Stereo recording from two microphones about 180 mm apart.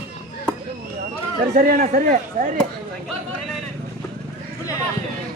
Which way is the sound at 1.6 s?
50° right (ahead or behind).